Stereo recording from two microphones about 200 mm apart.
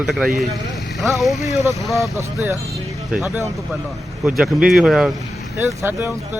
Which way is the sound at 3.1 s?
Centre (ahead or behind).